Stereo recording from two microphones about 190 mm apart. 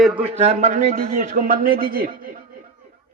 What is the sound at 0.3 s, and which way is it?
A man's voice, 35° right (ahead or behind).